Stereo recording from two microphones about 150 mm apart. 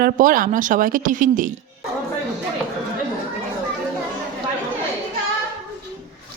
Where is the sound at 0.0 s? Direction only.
65° right (ahead or behind).